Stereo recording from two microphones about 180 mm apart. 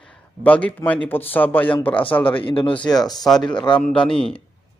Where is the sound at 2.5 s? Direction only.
30° left (ahead or behind).